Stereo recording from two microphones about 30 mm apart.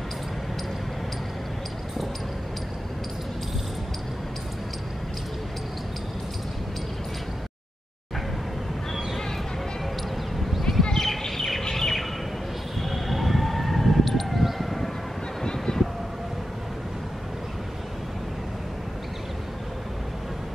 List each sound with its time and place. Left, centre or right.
10.8 s bird: centre
11.1 s chirp: centre
11.7 s bird: centre
12.8 s siren: centre
15.4 s a sound: left